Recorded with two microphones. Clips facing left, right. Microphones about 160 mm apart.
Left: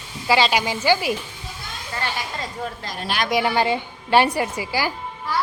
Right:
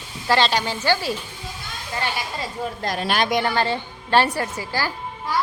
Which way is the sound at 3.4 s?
15° left (ahead or behind).